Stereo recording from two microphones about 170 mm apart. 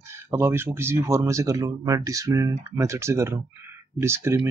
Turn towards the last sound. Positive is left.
turn(degrees=-15)  # may be behind; listen again after turning